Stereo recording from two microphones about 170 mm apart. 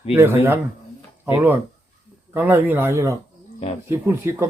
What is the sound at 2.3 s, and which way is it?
Speech, 10° right (ahead or behind).